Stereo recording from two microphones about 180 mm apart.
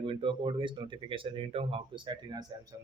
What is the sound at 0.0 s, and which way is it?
Speech, 30° right (ahead or behind).